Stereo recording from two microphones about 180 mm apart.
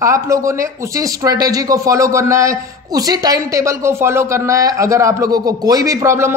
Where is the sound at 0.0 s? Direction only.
15° right (ahead or behind).